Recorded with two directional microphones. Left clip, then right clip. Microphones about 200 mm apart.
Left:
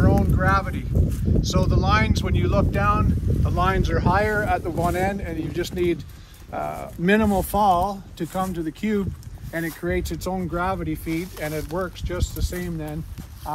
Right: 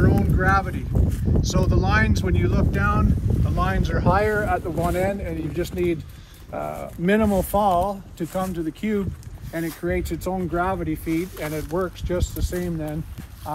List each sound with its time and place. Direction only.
0.0 s a sound: 5° left (ahead or behind)
1.4 s speech: centre (ahead or behind)
10.2 s speech: 35° left (ahead or behind)
11.5 s speech: 55° left (ahead or behind)